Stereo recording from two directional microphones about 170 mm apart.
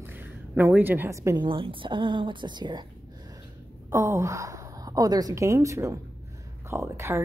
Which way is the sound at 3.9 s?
15° right (ahead or behind).